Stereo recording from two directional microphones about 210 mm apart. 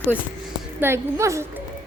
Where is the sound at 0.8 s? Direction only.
10° right (ahead or behind).